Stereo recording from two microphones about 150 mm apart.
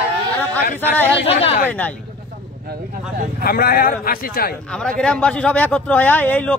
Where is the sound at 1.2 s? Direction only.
40° left (ahead or behind).